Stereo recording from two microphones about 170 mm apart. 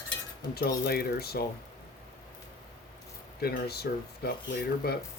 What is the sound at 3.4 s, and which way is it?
Speech, 65° left (ahead or behind).